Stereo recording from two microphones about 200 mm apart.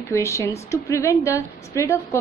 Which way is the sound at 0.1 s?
15° left (ahead or behind).